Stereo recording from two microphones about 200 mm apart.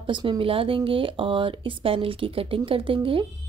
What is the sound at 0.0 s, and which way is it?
A woman's voice, 25° right (ahead or behind).